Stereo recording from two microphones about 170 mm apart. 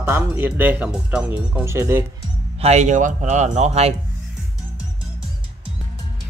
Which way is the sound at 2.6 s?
40° right (ahead or behind).